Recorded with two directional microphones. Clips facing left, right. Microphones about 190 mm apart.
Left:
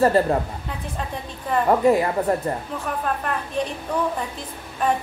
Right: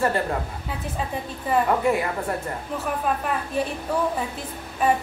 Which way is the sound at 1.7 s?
35° left (ahead or behind).